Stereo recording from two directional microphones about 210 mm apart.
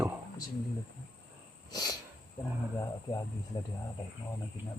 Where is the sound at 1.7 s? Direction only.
20° left (ahead or behind).